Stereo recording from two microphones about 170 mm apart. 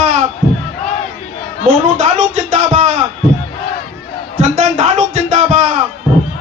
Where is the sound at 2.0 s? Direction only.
45° right (ahead or behind).